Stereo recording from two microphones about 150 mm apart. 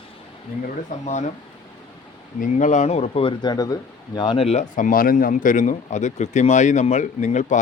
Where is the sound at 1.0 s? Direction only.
50° left (ahead or behind).